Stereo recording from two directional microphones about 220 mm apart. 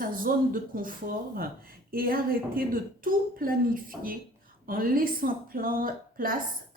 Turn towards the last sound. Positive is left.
turn(degrees=-40)  # may be behind; listen again after turning